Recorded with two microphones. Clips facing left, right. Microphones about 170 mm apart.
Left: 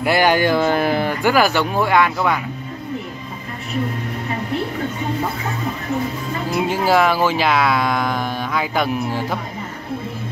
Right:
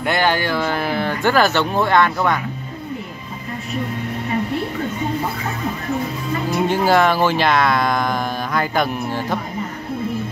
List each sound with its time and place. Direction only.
0.0 s speech: 10° left (ahead or behind)
6.5 s speech: 5° left (ahead or behind)